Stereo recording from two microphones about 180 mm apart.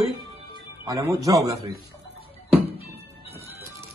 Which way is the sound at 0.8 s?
20° right (ahead or behind).